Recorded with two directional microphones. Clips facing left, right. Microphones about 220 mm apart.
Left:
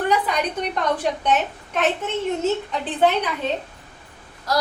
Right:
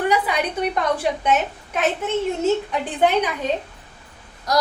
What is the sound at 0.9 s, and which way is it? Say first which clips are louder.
Speech: right 1 dB; 10° right (ahead or behind).